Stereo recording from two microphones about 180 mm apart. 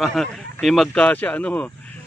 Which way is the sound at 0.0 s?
Centre (ahead or behind).